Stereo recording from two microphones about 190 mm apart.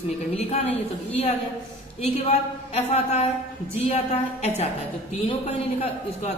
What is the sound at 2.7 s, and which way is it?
A woman's voice, 35° left (ahead or behind).